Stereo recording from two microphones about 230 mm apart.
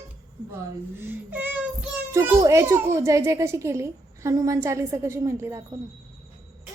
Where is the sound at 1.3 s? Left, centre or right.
Centre.